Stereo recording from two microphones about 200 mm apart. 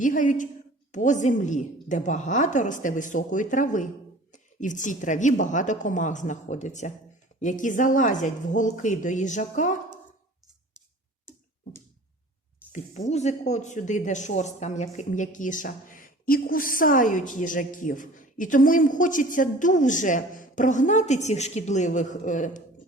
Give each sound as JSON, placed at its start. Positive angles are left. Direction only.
{"t": 0.0, "sound": "speech", "side_deg": 40}
{"t": 13.1, "sound": "speech", "side_deg": 35}